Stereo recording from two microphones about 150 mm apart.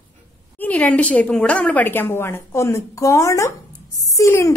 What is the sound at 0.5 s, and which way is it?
A woman's voice, 10° left (ahead or behind).